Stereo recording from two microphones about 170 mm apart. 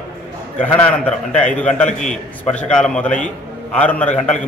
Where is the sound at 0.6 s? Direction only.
5° left (ahead or behind).